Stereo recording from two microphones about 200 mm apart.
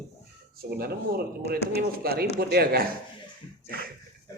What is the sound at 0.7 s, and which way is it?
A man's voice, 50° right (ahead or behind).